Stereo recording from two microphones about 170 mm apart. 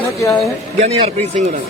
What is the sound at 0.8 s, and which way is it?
Speech, 40° right (ahead or behind).